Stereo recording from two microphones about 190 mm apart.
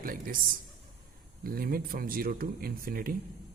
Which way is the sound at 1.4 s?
50° right (ahead or behind).